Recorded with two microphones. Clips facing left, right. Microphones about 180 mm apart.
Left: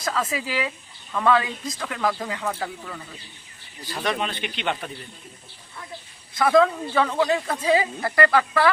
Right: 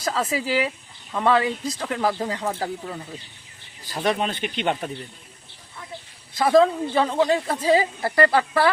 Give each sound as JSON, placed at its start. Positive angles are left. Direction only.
{"t": 0.0, "sound": "speech", "side_deg": -30}
{"t": 6.4, "sound": "speech", "side_deg": -30}